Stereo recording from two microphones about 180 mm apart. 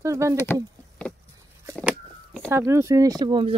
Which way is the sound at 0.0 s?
15° right (ahead or behind).